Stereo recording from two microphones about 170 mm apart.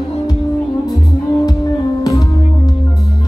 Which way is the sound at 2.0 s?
20° left (ahead or behind).